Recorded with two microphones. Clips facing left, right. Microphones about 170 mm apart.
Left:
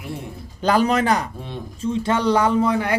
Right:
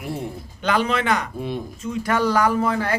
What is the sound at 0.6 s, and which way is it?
Speech, 40° left (ahead or behind).